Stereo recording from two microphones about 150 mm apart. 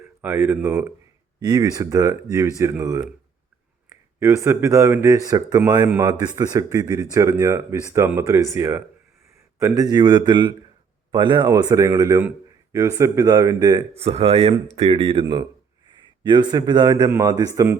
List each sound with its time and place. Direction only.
0.2 s speech: 15° right (ahead or behind)
1.4 s speech: 25° right (ahead or behind)
4.2 s speech: 15° right (ahead or behind)
13.9 s speech: 40° right (ahead or behind); by 17.7 s 20° right (ahead or behind)